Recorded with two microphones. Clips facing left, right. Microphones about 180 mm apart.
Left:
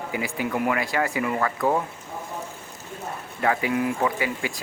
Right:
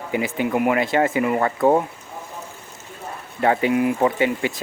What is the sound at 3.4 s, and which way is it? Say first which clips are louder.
Speech: right 5 dB; 25° right (ahead or behind).